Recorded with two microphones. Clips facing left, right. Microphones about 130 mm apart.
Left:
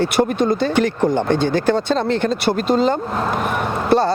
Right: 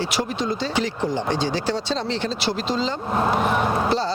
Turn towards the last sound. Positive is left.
turn(degrees=-10)  # may be behind; listen again after turning